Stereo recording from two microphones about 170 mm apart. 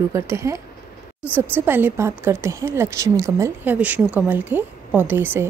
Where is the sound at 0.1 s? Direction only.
15° right (ahead or behind).